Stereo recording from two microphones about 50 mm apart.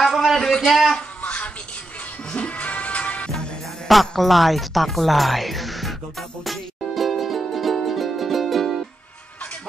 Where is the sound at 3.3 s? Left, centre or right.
Centre.